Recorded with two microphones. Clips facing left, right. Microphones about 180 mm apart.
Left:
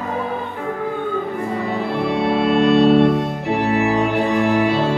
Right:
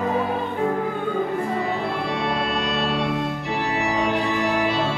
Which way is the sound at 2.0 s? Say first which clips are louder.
Left 7 dB; 55° left (ahead or behind).